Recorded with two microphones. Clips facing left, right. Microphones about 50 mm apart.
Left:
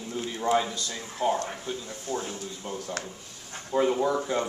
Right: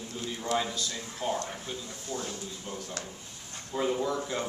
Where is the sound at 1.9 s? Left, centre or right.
Left; by 4.4 s centre.